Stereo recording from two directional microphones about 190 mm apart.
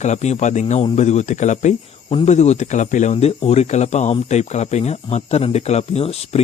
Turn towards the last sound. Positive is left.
turn(degrees=35)  # may be behind; listen again after turning